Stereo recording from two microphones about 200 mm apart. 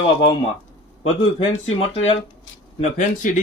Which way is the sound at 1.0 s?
30° left (ahead or behind).